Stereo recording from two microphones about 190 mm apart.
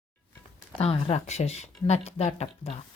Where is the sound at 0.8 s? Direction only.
30° left (ahead or behind).